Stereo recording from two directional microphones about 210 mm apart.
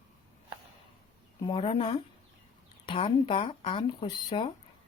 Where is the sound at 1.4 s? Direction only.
25° left (ahead or behind).